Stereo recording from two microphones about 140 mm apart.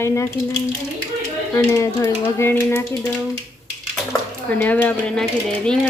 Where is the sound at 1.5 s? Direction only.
20° left (ahead or behind).